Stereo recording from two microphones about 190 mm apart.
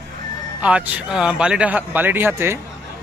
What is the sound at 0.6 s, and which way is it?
Speech, 5° right (ahead or behind).